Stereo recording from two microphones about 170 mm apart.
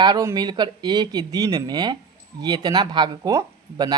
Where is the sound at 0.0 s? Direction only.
20° right (ahead or behind).